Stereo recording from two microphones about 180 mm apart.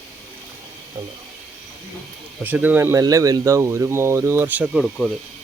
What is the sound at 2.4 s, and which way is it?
Speech, 10° right (ahead or behind).